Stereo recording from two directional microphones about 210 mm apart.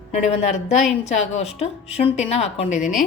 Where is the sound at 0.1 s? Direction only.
30° left (ahead or behind).